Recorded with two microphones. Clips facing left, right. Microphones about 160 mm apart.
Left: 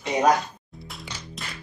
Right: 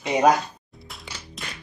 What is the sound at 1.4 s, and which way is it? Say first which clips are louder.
Music: right 2 dB; centre (ahead or behind).